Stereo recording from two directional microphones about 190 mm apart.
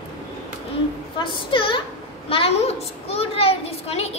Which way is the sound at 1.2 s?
25° left (ahead or behind).